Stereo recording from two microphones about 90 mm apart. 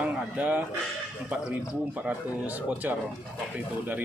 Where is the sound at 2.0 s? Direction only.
15° right (ahead or behind).